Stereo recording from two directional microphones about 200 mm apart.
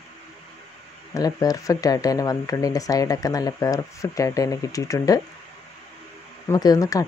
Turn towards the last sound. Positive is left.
turn(degrees=15)  # may be behind; listen again after turning